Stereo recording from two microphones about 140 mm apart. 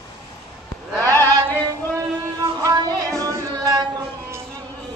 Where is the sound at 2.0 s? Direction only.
25° right (ahead or behind).